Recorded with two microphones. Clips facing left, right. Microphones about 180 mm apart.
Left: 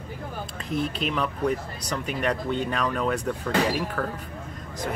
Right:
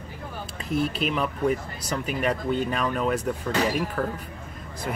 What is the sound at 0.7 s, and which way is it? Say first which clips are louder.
Speech: right 2 dB; 5° right (ahead or behind).